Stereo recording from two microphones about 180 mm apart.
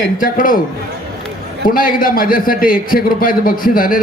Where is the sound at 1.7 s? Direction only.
50° left (ahead or behind).